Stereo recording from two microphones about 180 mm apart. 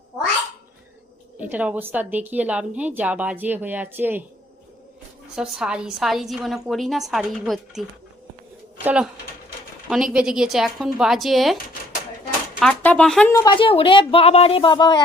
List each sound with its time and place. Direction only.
1.4 s a woman's voice: 10° right (ahead or behind)
5.3 s a woman's voice: 5° right (ahead or behind)
12.5 s speech: 5° left (ahead or behind)
13.3 s speech: 20° left (ahead or behind)